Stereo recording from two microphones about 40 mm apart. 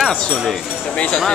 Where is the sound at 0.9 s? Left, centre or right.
Left.